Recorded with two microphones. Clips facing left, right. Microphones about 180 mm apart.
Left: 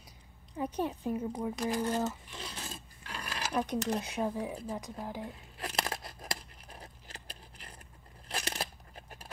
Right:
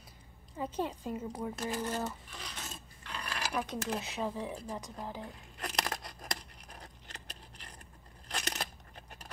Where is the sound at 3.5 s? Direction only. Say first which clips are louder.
Left 5 dB; 20° left (ahead or behind).